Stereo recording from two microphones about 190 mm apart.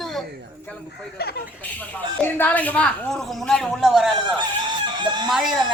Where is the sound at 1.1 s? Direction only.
55° left (ahead or behind).